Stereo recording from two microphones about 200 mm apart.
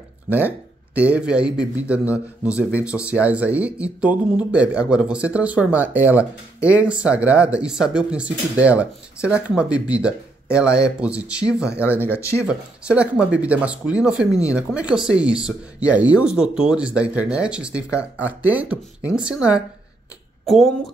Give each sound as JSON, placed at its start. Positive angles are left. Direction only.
{"t": 0.3, "sound": "speech", "side_deg": -10}